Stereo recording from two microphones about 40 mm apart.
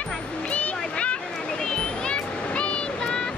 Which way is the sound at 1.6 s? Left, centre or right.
Left.